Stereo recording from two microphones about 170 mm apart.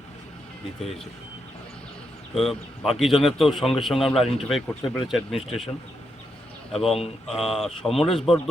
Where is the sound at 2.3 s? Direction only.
Centre (ahead or behind).